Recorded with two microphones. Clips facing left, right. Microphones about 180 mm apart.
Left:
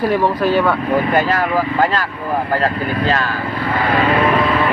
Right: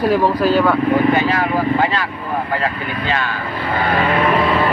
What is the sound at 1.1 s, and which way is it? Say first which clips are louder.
Speech: left 1 dB; 45° left (ahead or behind).